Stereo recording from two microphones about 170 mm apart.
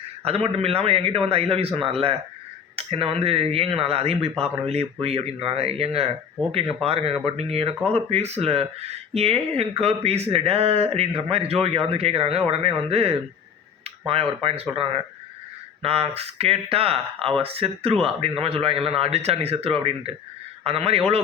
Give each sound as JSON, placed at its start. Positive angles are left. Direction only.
{"t": 0.3, "sound": "speech", "side_deg": -35}